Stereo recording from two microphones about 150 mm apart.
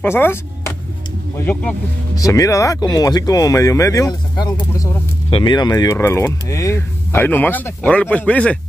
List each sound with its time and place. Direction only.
0.0 s speech: 15° left (ahead or behind)
2.1 s speech: 20° left (ahead or behind)